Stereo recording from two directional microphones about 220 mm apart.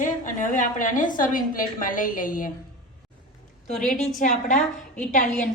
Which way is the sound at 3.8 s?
Centre (ahead or behind).